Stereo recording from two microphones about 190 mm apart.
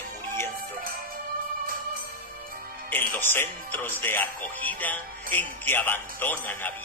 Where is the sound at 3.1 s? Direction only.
10° left (ahead or behind).